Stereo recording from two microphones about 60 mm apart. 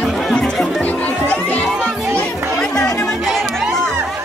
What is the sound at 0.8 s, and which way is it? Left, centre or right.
Music, left.